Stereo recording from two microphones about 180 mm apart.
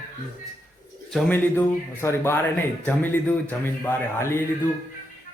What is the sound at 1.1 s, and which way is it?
Speech, 5° left (ahead or behind).